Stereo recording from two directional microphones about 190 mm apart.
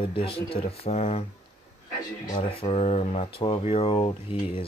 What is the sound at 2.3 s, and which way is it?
Speech, 30° left (ahead or behind).